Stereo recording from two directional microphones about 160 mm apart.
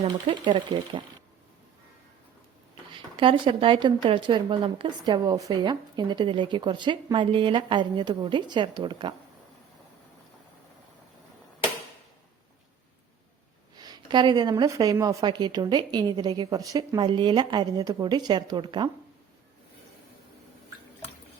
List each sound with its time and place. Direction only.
0.0 s speech: 30° right (ahead or behind)
2.9 s speech: 35° right (ahead or behind)
13.7 s speech: 25° right (ahead or behind)